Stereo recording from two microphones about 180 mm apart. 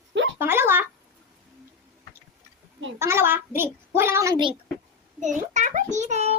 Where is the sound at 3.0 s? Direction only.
15° right (ahead or behind).